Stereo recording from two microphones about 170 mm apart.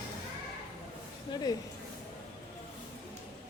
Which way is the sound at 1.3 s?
25° left (ahead or behind).